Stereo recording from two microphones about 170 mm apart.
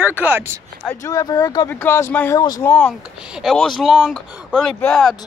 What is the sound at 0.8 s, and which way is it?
Speech, 20° left (ahead or behind).